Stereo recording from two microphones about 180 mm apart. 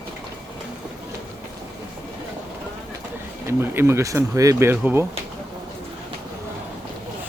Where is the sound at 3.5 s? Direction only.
15° right (ahead or behind).